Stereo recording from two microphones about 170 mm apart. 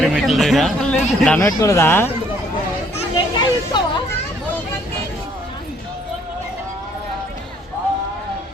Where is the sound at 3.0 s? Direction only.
30° left (ahead or behind).